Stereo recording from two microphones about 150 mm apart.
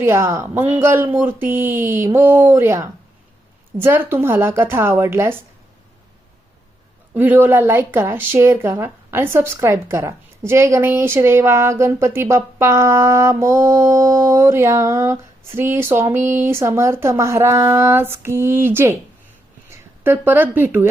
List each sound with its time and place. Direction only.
0.0 s speech: 20° right (ahead or behind)
7.1 s speech: 15° right (ahead or behind)